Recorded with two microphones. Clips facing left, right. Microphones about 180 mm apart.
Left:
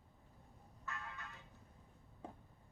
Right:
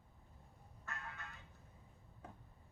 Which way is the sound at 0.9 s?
50° right (ahead or behind).